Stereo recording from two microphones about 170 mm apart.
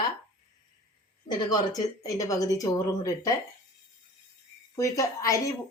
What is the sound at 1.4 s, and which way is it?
Speech, 25° left (ahead or behind).